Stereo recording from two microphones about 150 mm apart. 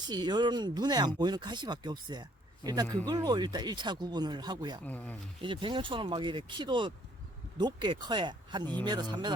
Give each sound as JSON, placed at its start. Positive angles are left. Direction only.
{"t": 0.1, "sound": "speech", "side_deg": -30}
{"t": 4.9, "sound": "speech", "side_deg": 10}
{"t": 5.4, "sound": "speech", "side_deg": -35}